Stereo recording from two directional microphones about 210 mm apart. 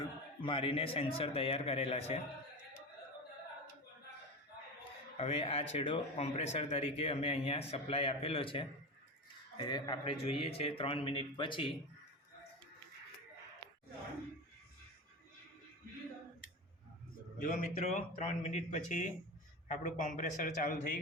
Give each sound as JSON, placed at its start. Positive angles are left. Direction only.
{"t": 0.0, "sound": "speech", "side_deg": 25}
{"t": 5.1, "sound": "speech", "side_deg": 25}
{"t": 17.4, "sound": "speech", "side_deg": 35}